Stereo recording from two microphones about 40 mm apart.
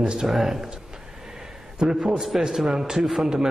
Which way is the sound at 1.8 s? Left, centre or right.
Centre.